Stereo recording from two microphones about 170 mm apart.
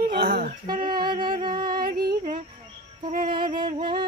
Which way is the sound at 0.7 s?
25° right (ahead or behind).